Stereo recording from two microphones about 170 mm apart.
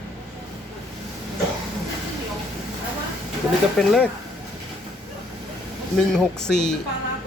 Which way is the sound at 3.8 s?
5° left (ahead or behind).